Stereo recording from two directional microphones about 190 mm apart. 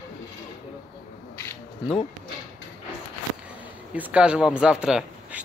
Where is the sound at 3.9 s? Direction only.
5° right (ahead or behind).